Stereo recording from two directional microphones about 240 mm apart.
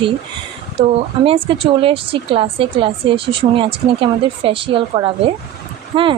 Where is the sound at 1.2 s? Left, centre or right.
Right.